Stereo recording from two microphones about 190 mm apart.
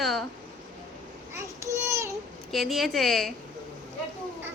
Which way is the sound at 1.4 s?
15° right (ahead or behind).